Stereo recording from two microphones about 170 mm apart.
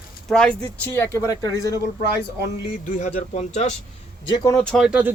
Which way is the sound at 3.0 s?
40° left (ahead or behind).